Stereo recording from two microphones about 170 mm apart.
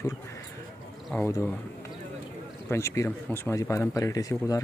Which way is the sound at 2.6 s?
15° left (ahead or behind).